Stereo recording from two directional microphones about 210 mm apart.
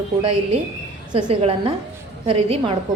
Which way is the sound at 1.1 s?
25° right (ahead or behind).